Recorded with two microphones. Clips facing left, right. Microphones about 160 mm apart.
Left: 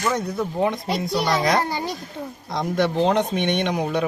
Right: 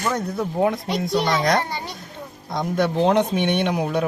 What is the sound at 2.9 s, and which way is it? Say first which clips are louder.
Speech: right 2 dB; 15° right (ahead or behind).